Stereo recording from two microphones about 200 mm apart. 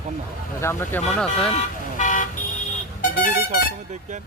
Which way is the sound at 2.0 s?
40° left (ahead or behind).